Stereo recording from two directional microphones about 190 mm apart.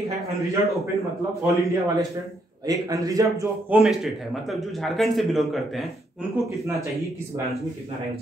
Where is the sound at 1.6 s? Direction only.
15° right (ahead or behind).